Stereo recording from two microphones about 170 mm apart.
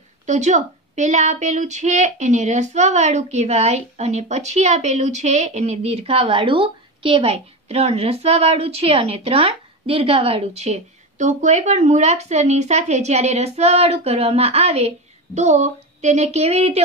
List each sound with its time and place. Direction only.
0.3 s speech: 45° right (ahead or behind)